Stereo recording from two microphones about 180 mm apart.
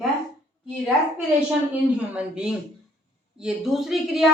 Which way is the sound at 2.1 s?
5° right (ahead or behind).